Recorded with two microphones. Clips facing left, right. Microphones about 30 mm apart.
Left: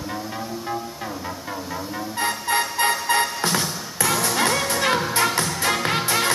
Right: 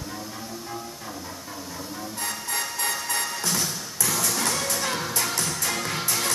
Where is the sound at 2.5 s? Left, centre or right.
Left.